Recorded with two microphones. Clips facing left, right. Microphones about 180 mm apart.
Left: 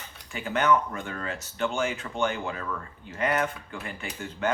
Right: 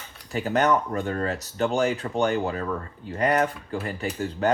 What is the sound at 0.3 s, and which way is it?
Speech, 40° right (ahead or behind).